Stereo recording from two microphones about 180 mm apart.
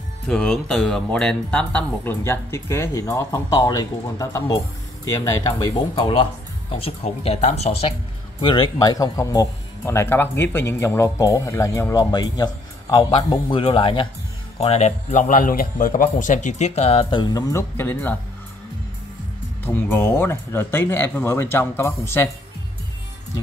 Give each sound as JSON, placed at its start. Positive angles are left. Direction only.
{"t": 0.3, "sound": "a man's voice", "side_deg": 5}
{"t": 8.4, "sound": "a man's voice", "side_deg": 25}
{"t": 19.6, "sound": "speech", "side_deg": 10}